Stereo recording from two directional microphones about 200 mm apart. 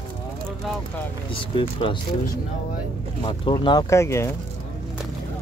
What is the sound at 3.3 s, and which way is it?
Speech, 25° left (ahead or behind).